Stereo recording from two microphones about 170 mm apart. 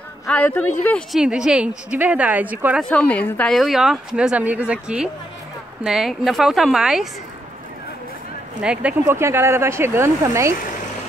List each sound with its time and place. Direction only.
0.3 s speech: 10° left (ahead or behind)
1.2 s speech: 5° right (ahead or behind)
2.8 s speech: 5° left (ahead or behind)
8.6 s speech: 10° right (ahead or behind)